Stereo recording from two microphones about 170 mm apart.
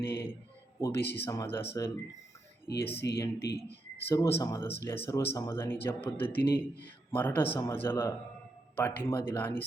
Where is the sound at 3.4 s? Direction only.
70° left (ahead or behind).